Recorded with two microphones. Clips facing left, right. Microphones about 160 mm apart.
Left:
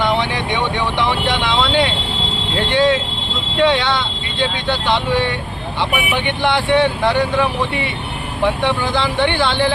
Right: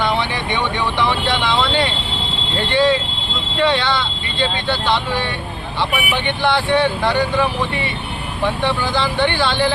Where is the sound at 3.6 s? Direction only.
20° left (ahead or behind).